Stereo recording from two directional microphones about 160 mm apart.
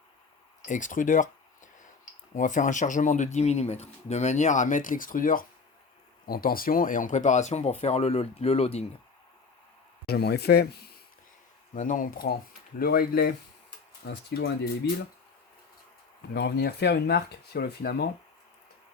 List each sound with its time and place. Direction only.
0.6 s a sound: 55° left (ahead or behind)
2.3 s speech: 50° left (ahead or behind)
10.1 s speech: 90° left
11.7 s speech: 55° left (ahead or behind); by 13.3 s 75° left (ahead or behind)
14.1 s speech: 90° left
16.3 s speech: 90° left